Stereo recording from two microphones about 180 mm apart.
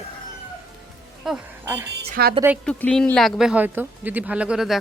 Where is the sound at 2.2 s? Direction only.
60° right (ahead or behind).